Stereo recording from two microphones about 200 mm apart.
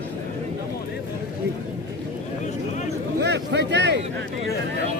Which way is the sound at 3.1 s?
60° right (ahead or behind).